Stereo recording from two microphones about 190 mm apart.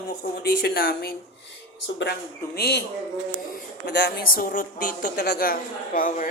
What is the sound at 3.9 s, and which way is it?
A woman's voice, 60° left (ahead or behind).